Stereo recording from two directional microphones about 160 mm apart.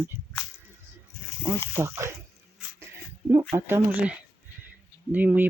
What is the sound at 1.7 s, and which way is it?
Speech, 15° right (ahead or behind).